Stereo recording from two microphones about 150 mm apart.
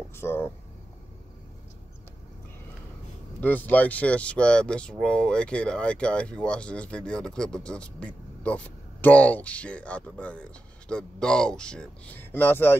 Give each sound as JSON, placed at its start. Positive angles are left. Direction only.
{"t": 0.1, "sound": "speech", "side_deg": 15}
{"t": 3.3, "sound": "speech", "side_deg": 10}